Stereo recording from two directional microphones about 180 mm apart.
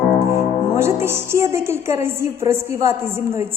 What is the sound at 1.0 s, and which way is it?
A woman's voice, 15° right (ahead or behind).